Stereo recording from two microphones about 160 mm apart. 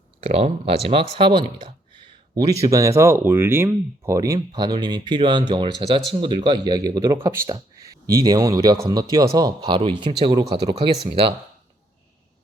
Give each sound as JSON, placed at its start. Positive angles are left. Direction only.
{"t": 0.2, "sound": "speech", "side_deg": -40}
{"t": 2.3, "sound": "speech", "side_deg": -20}